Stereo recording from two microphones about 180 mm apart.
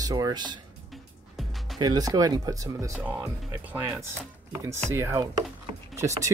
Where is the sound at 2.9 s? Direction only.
10° right (ahead or behind).